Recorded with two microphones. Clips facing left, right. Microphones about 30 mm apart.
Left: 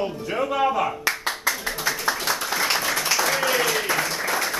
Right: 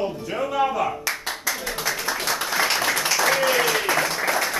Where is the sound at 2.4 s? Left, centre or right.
Centre.